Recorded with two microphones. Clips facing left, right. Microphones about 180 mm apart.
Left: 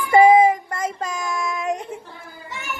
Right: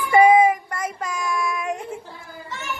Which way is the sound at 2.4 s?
10° left (ahead or behind).